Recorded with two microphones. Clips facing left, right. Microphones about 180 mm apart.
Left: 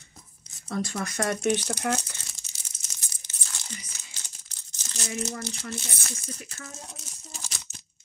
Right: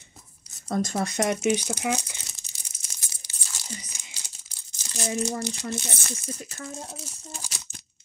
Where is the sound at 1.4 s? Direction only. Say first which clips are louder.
Right 1 dB; 10° right (ahead or behind).